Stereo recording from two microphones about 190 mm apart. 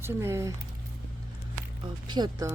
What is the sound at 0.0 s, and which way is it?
Speech, 15° right (ahead or behind).